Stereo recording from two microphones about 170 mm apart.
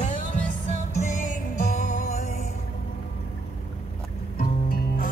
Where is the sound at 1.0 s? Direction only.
45° left (ahead or behind).